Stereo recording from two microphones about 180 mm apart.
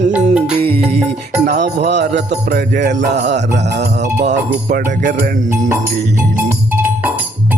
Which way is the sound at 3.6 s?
60° right (ahead or behind).